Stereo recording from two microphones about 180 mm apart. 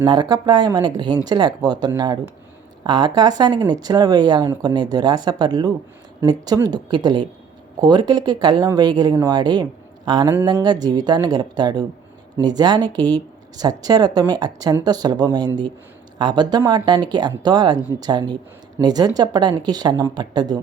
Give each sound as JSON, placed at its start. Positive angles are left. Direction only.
{"t": 0.0, "sound": "speech", "side_deg": -25}